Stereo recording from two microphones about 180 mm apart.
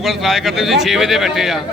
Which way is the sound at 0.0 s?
Centre (ahead or behind).